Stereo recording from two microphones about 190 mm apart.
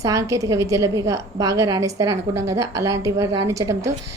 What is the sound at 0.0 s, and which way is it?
A woman's voice, 15° right (ahead or behind).